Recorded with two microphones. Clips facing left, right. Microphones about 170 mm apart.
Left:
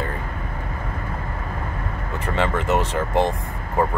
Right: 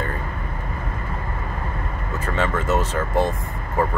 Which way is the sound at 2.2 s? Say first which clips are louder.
Left 1 dB; 15° left (ahead or behind).